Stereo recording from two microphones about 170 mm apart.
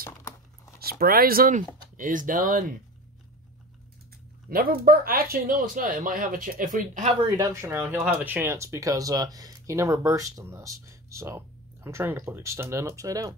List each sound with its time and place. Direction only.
0.7 s speech: 65° right (ahead or behind)
4.5 s speech: 60° right (ahead or behind)
7.2 s speech: 20° right (ahead or behind)